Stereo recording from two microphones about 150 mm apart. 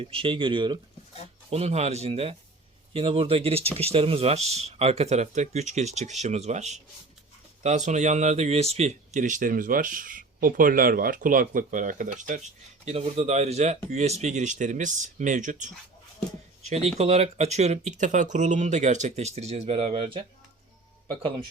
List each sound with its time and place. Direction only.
0.0 s speech: 35° right (ahead or behind)
1.5 s speech: 45° right (ahead or behind)
12.8 s speech: 45° right (ahead or behind)
17.0 s speech: 45° right (ahead or behind)